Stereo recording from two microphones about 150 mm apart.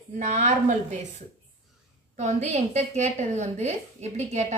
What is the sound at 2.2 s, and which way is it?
A woman's voice, 50° right (ahead or behind).